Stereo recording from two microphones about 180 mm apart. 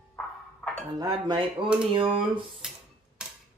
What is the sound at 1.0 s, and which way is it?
Speech, 25° right (ahead or behind).